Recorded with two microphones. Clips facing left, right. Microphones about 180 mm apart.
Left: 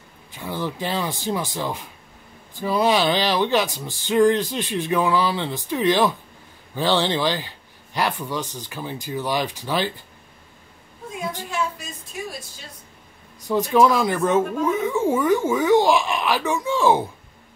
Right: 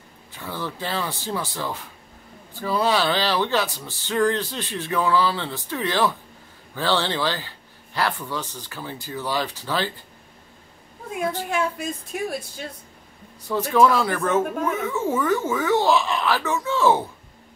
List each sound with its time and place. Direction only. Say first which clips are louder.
0.3 s speech: left 3 dB; 15° left (ahead or behind)
11.4 s speech: right 3 dB; 55° right (ahead or behind)
13.5 s speech: left 1 dB; 15° left (ahead or behind)